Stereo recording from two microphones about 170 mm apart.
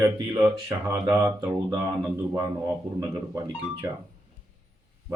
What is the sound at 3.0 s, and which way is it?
Speech, 25° right (ahead or behind).